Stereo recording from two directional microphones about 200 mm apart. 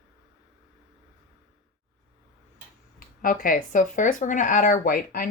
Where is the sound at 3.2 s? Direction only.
45° left (ahead or behind).